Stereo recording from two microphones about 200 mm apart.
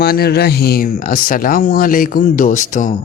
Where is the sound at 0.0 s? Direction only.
50° left (ahead or behind).